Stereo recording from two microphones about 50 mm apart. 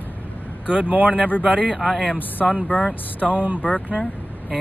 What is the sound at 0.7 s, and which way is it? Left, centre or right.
Speech, right.